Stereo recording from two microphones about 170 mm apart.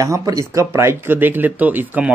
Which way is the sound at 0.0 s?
20° right (ahead or behind).